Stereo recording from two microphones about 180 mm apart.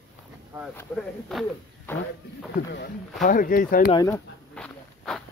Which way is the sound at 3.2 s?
50° left (ahead or behind).